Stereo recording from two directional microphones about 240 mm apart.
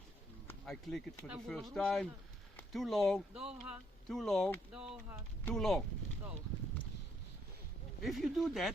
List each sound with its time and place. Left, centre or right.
0.4 s speech: centre
8.0 s speech: centre